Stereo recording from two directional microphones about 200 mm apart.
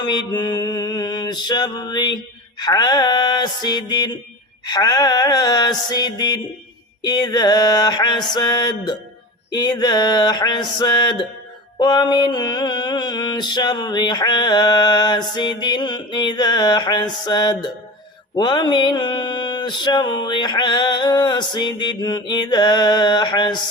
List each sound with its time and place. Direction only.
0.0 s mantra: 20° left (ahead or behind)